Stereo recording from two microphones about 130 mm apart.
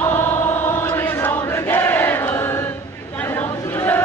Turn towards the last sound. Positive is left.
turn(degrees=20)  # may be behind; listen again after turning